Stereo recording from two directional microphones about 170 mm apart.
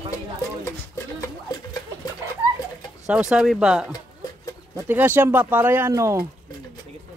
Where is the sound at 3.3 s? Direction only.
5° right (ahead or behind).